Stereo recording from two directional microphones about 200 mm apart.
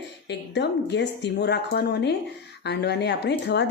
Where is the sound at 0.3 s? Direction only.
60° left (ahead or behind).